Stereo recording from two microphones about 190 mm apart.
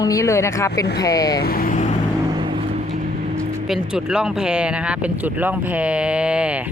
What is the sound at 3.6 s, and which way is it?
Speech, 5° right (ahead or behind).